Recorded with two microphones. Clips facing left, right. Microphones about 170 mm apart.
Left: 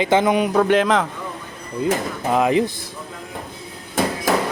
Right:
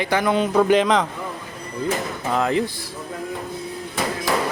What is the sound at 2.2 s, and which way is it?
Speech, 15° left (ahead or behind).